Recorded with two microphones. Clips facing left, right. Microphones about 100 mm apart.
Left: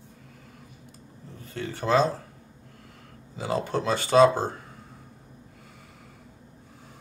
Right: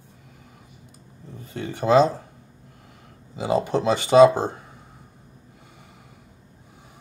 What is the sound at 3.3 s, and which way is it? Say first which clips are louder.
Speech: right 5 dB; 15° right (ahead or behind).